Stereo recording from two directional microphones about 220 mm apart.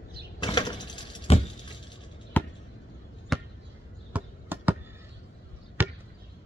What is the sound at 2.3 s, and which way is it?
Chop, 10° left (ahead or behind).